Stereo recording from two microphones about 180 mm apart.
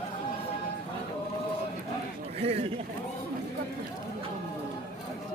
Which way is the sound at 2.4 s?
35° right (ahead or behind).